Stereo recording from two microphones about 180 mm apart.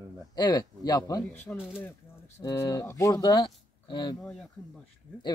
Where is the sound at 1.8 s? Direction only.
15° left (ahead or behind).